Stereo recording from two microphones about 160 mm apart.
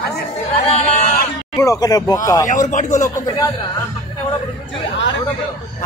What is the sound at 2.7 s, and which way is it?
Speech, 50° left (ahead or behind).